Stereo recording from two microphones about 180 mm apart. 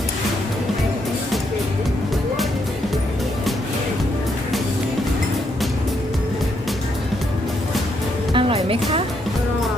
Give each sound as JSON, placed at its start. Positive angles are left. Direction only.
{"t": 8.3, "sound": "music", "side_deg": -30}